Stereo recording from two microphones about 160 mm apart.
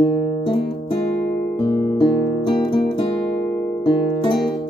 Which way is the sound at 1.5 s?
30° left (ahead or behind).